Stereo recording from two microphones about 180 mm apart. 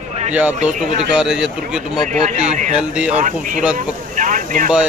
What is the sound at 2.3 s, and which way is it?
Speech, 40° right (ahead or behind).